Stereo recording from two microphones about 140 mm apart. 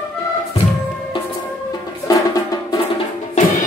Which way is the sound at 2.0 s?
25° left (ahead or behind).